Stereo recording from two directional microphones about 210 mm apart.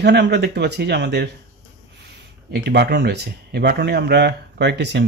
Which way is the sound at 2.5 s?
50° right (ahead or behind).